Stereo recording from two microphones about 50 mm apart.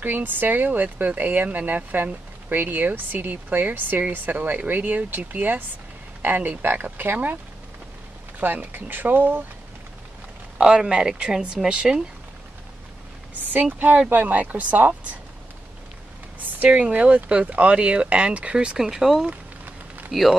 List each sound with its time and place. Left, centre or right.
0.0 s speech: right
8.4 s speech: right
10.6 s speech: centre
13.4 s speech: right
16.6 s speech: right
18.8 s speech: centre